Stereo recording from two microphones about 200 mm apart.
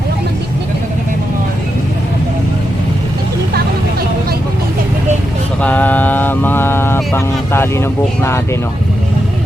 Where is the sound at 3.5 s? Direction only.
50° right (ahead or behind).